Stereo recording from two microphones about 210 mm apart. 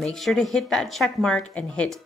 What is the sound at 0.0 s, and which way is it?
Speech, centre (ahead or behind).